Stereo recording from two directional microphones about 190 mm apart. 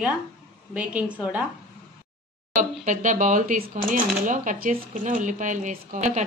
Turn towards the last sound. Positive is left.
turn(degrees=-40)  # may be behind; listen again after turning